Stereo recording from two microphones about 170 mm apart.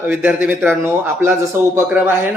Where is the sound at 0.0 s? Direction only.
10° right (ahead or behind).